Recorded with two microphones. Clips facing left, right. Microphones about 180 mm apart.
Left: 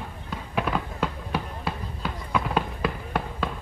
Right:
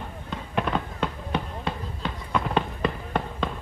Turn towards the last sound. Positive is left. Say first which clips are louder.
# right 1 dB
turn(degrees=5)  # may be behind; listen again after turning